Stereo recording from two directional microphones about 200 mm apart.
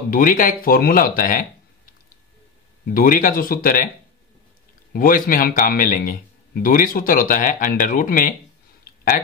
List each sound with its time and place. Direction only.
0.1 s a man's voice: 45° left (ahead or behind)
2.9 s a man's voice: 45° left (ahead or behind)
4.9 s a man's voice: 45° left (ahead or behind)
8.8 s a sound: 45° left (ahead or behind)